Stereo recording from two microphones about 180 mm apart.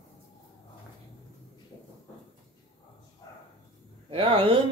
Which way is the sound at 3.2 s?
20° left (ahead or behind).